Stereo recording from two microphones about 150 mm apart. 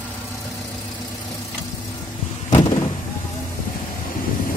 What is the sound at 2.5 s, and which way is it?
Vehicle, 30° left (ahead or behind).